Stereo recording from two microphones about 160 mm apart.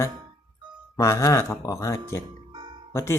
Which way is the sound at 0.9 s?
20° left (ahead or behind).